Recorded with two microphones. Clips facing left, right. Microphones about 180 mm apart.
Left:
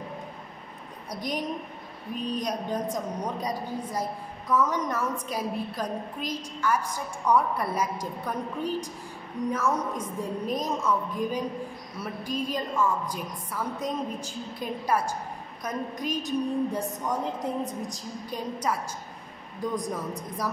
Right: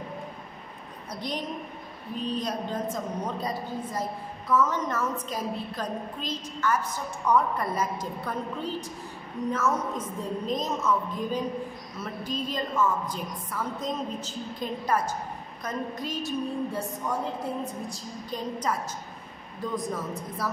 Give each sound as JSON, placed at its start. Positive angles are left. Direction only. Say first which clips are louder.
{"t": 1.1, "sound": "a woman's voice", "louder": "left 2 dB", "side_deg": 10}
{"t": 17.8, "sound": "a woman's voice", "louder": "left 1 dB", "side_deg": 15}